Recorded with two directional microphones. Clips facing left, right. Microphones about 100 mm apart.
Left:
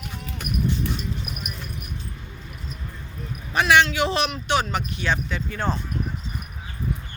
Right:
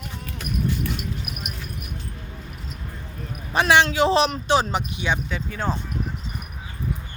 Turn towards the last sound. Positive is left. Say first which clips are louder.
# even
turn(degrees=-5)  # may be behind; listen again after turning